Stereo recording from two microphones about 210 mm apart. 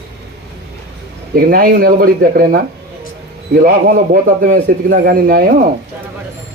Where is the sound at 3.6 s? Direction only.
45° right (ahead or behind).